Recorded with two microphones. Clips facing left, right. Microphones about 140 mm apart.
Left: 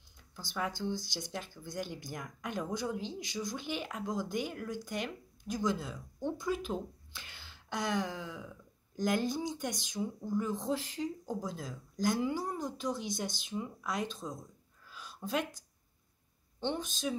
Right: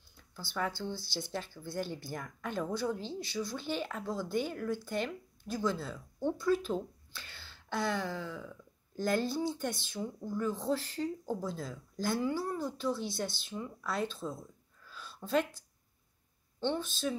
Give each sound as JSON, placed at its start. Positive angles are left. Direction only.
{"t": 0.4, "sound": "speech", "side_deg": 15}
{"t": 14.9, "sound": "a sound", "side_deg": 10}
{"t": 16.5, "sound": "speech", "side_deg": 15}